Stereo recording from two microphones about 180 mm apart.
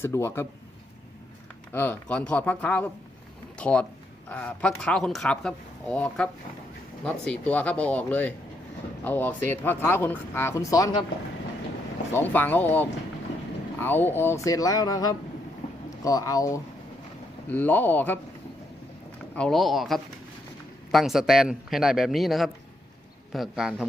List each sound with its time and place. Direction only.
0.0 s speech: 15° left (ahead or behind)
1.7 s speech: 10° left (ahead or behind)
12.1 s speech: 10° left (ahead or behind)
19.4 s speech: centre (ahead or behind)